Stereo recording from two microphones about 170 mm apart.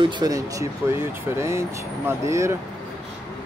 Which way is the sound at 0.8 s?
15° right (ahead or behind).